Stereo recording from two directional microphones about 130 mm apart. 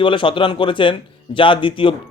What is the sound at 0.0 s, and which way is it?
Speech, 40° left (ahead or behind).